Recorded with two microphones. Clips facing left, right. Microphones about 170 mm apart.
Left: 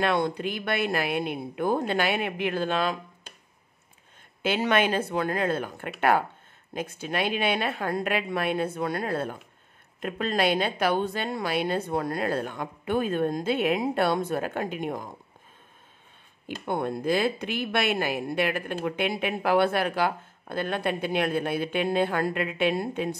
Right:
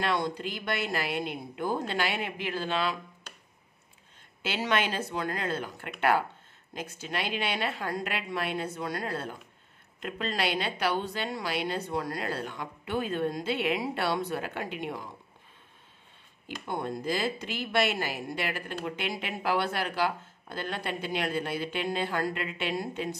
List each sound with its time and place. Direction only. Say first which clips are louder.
0.0 s speech: left 4 dB; 55° left (ahead or behind)
4.4 s a woman's voice: left 5 dB; 55° left (ahead or behind)
16.6 s speech: left 5 dB; 55° left (ahead or behind)